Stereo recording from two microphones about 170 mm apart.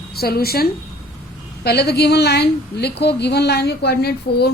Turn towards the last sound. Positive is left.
turn(degrees=70)  # may be behind; listen again after turning